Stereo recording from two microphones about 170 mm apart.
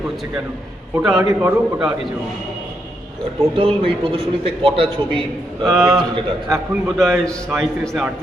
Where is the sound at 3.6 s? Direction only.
35° right (ahead or behind).